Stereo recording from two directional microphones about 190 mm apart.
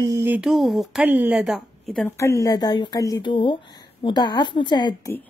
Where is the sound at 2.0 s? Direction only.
15° left (ahead or behind).